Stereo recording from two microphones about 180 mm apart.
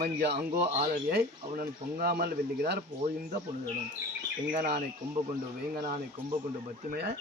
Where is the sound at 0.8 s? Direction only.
55° right (ahead or behind).